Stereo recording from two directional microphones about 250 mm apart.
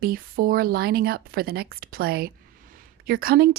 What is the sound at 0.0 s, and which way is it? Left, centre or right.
Speech, right.